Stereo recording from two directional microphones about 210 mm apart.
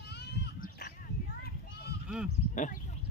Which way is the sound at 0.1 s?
50° left (ahead or behind).